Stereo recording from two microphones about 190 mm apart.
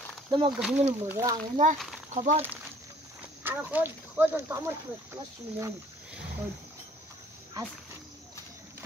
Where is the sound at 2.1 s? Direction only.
40° right (ahead or behind).